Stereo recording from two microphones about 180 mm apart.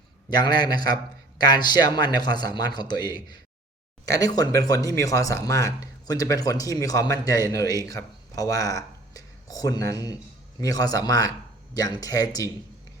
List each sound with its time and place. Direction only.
0.4 s speech: 25° left (ahead or behind)